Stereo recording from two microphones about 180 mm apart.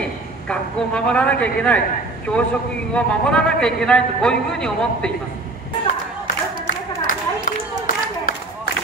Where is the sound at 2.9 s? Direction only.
5° left (ahead or behind).